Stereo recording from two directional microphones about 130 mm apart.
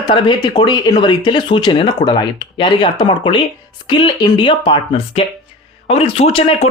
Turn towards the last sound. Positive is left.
turn(degrees=50)  # may be behind; listen again after turning